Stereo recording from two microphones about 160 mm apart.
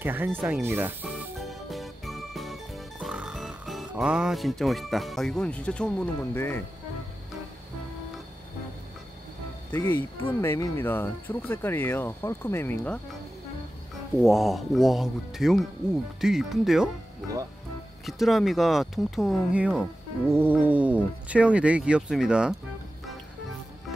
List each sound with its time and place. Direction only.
0.0 s speech: 10° right (ahead or behind)
1.1 s music: centre (ahead or behind)
3.9 s speech: 5° right (ahead or behind); by 6.6 s 15° left (ahead or behind)
9.7 s speech: 10° left (ahead or behind)
14.2 s speech: centre (ahead or behind)
18.0 s speech: centre (ahead or behind)